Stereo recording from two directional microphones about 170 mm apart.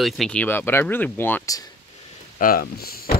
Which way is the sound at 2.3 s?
60° left (ahead or behind).